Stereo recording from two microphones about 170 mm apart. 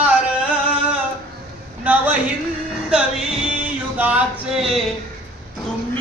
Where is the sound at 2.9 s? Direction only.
5° right (ahead or behind).